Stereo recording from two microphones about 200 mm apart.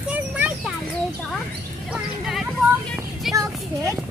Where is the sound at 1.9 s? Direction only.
Centre (ahead or behind).